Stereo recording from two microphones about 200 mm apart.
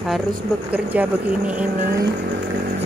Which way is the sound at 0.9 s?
5° right (ahead or behind).